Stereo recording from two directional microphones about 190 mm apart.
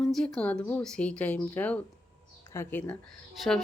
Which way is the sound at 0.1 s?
5° left (ahead or behind).